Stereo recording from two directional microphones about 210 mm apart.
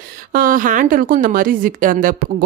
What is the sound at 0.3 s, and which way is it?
Speech, 40° right (ahead or behind).